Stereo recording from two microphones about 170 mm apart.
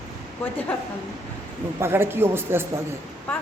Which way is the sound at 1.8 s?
15° right (ahead or behind).